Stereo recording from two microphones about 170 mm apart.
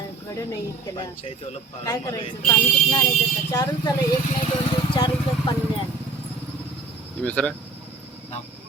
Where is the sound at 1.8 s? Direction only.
20° left (ahead or behind).